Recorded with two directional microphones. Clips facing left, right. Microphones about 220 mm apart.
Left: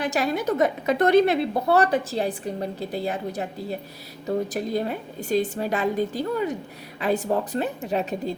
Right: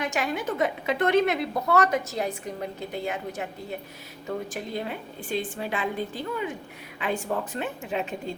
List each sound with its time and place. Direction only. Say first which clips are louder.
0.0 s a woman's voice: left 4 dB; 35° left (ahead or behind)